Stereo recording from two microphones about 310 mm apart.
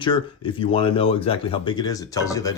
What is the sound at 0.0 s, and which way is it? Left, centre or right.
Speech, centre.